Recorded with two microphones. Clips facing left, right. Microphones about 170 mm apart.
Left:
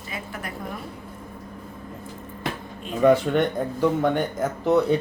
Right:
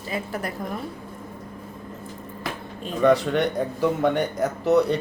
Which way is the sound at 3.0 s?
Centre (ahead or behind).